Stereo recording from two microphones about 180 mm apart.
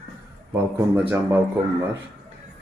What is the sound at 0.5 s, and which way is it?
Speech, 10° right (ahead or behind).